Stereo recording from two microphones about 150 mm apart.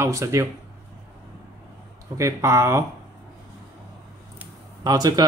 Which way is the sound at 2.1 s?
20° right (ahead or behind).